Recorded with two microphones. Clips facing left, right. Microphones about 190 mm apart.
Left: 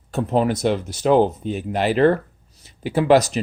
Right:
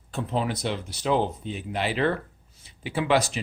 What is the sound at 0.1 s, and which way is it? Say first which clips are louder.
Speech: left 8 dB; 45° left (ahead or behind).